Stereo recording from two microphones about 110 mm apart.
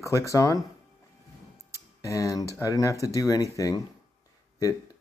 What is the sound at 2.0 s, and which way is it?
Speech, 30° left (ahead or behind).